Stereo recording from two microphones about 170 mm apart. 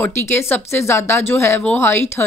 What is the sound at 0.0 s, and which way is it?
Speech, 15° left (ahead or behind).